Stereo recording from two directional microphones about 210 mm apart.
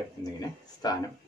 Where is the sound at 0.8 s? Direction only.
20° left (ahead or behind).